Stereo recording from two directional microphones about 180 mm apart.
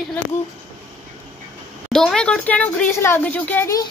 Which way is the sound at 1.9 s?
5° left (ahead or behind).